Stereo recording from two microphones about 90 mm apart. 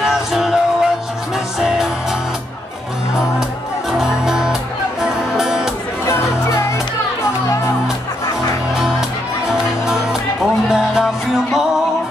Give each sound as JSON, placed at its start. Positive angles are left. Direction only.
{"t": 0.0, "sound": "music", "side_deg": -5}
{"t": 4.0, "sound": "music", "side_deg": -5}
{"t": 6.0, "sound": "music", "side_deg": 35}
{"t": 10.7, "sound": "music", "side_deg": -5}